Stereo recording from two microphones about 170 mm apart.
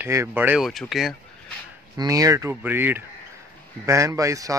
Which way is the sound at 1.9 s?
20° right (ahead or behind).